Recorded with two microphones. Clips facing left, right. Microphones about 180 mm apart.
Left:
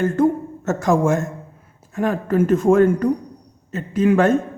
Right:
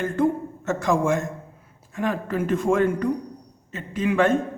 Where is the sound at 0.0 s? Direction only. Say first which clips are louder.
Left 5 dB; 45° left (ahead or behind).